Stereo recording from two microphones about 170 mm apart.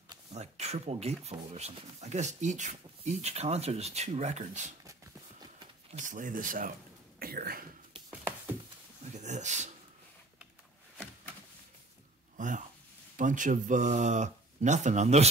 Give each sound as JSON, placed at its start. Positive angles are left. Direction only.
{"t": 0.3, "sound": "speech", "side_deg": -40}
{"t": 5.9, "sound": "speech", "side_deg": -50}
{"t": 8.1, "sound": "a sound", "side_deg": -10}
{"t": 9.1, "sound": "speech", "side_deg": -45}
{"t": 12.4, "sound": "speech", "side_deg": -50}